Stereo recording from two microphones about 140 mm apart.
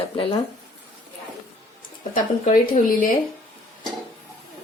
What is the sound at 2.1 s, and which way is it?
Speech, 75° left (ahead or behind).